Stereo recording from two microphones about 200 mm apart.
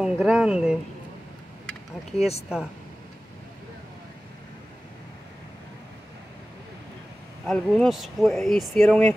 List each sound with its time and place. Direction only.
0.0 s speech: 5° right (ahead or behind)
2.1 s speech: 30° left (ahead or behind)
7.4 s speech: centre (ahead or behind)